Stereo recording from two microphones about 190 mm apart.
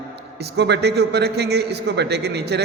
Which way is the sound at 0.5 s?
60° right (ahead or behind).